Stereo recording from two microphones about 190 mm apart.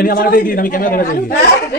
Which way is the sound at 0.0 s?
50° left (ahead or behind).